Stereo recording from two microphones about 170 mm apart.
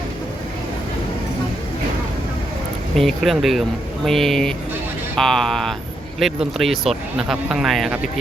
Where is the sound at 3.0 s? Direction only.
Centre (ahead or behind).